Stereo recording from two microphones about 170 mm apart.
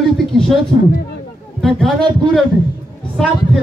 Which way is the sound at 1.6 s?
Centre (ahead or behind).